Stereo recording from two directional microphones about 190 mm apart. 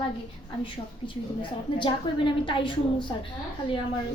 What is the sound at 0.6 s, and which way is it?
A woman's voice, 25° left (ahead or behind).